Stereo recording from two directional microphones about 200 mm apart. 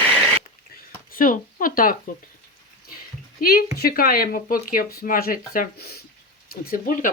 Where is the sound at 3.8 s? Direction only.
45° left (ahead or behind).